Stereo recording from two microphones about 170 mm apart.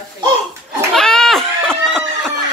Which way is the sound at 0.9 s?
5° left (ahead or behind).